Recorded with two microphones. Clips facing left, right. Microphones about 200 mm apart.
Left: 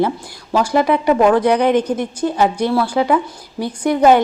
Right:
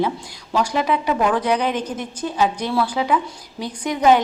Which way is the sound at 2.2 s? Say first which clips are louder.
Left 4 dB; 60° left (ahead or behind).